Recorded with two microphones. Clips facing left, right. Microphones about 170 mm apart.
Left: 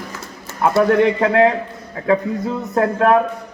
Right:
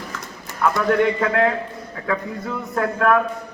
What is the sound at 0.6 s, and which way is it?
A man's voice, 30° left (ahead or behind).